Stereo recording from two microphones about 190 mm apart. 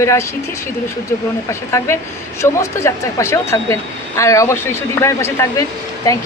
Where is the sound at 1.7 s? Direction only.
15° left (ahead or behind).